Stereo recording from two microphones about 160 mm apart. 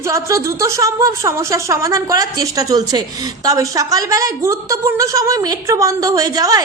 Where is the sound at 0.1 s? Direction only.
20° right (ahead or behind).